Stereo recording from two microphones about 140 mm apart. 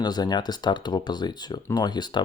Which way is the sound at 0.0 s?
30° left (ahead or behind).